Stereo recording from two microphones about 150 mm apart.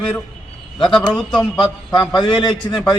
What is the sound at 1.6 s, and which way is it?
A man's voice, 30° left (ahead or behind).